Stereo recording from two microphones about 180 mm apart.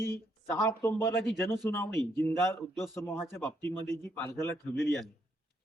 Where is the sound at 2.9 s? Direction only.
15° left (ahead or behind).